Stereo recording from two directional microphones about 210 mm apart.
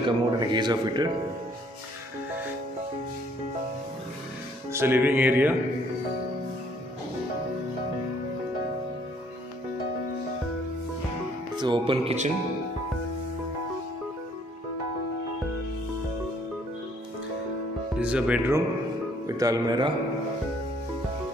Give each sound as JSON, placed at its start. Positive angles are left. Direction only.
{"t": 0.0, "sound": "speech", "side_deg": -20}
{"t": 4.7, "sound": "music", "side_deg": -10}
{"t": 11.5, "sound": "speech", "side_deg": -20}
{"t": 17.9, "sound": "speech", "side_deg": -5}
{"t": 19.2, "sound": "music", "side_deg": -15}